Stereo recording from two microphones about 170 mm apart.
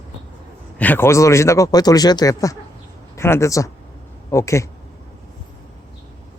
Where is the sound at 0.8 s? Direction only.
10° left (ahead or behind).